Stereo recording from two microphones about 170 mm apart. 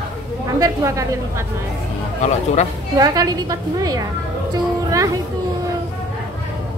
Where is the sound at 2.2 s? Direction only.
45° left (ahead or behind).